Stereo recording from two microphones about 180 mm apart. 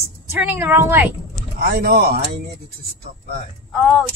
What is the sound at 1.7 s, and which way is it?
Speech, 60° right (ahead or behind).